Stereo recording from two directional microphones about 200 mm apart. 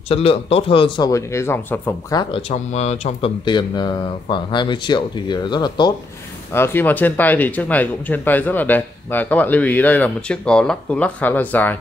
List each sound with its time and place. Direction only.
0.1 s speech: 30° left (ahead or behind); by 2.2 s 15° left (ahead or behind)
2.3 s speech: 30° left (ahead or behind)
6.5 s speech: 10° left (ahead or behind)